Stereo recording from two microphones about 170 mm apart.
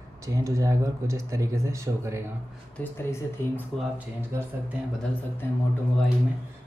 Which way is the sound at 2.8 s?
10° left (ahead or behind).